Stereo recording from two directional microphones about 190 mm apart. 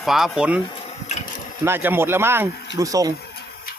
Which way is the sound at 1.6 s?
10° right (ahead or behind).